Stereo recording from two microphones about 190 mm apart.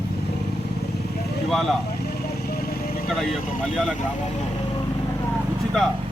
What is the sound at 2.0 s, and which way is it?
Vehicle, 55° left (ahead or behind).